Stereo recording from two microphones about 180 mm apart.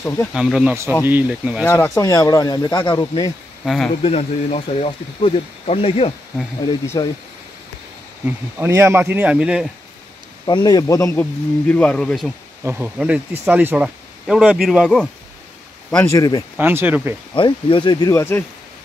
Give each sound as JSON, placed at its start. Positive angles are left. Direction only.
{"t": 0.3, "sound": "speech", "side_deg": -5}
{"t": 1.6, "sound": "speech", "side_deg": 15}
{"t": 3.6, "sound": "speech", "side_deg": 0}
{"t": 4.0, "sound": "speech", "side_deg": 35}
{"t": 7.0, "sound": "speech", "side_deg": 20}
{"t": 8.3, "sound": "speech", "side_deg": -15}
{"t": 10.4, "sound": "speech", "side_deg": 25}
{"t": 12.6, "sound": "speech", "side_deg": -10}
{"t": 16.2, "sound": "speech", "side_deg": 20}
{"t": 16.5, "sound": "speech", "side_deg": -10}
{"t": 17.3, "sound": "speech", "side_deg": 25}